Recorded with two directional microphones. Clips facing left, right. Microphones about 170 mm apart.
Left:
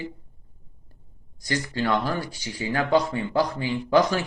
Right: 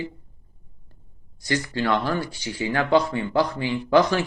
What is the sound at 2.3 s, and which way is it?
Speech, 40° left (ahead or behind).